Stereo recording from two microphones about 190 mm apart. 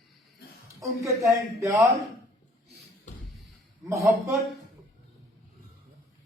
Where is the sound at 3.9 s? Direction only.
15° right (ahead or behind).